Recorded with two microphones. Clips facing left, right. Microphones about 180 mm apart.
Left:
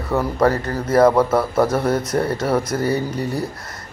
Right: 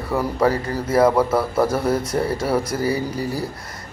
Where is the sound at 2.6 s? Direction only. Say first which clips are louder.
Left 1 dB; 30° right (ahead or behind).